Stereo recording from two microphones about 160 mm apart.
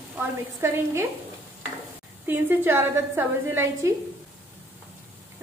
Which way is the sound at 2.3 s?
15° right (ahead or behind).